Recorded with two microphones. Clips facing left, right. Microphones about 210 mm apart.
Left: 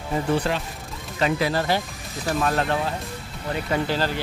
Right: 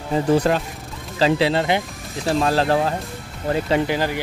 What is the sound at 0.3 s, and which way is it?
Speech, 40° right (ahead or behind).